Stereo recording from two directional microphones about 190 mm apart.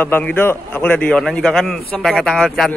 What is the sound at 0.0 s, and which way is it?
A man's voice, 10° left (ahead or behind).